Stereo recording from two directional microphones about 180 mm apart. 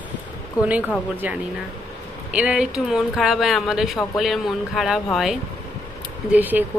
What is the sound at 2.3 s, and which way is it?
Speech, 5° right (ahead or behind).